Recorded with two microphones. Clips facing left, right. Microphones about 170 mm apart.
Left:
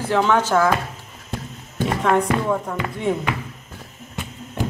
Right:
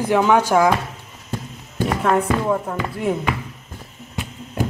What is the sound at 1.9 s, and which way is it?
Speech, 5° right (ahead or behind).